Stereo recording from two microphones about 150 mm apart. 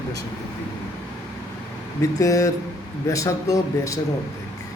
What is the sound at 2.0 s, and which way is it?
A man's voice, 20° left (ahead or behind).